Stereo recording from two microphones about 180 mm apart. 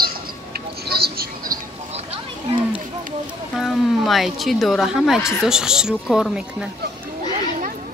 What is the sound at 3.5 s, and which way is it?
Speech, centre (ahead or behind).